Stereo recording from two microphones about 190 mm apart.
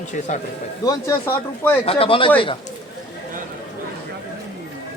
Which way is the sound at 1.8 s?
30° left (ahead or behind).